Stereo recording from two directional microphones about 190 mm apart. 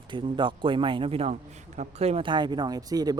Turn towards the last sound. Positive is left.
turn(degrees=-20)  # may be behind; listen again after turning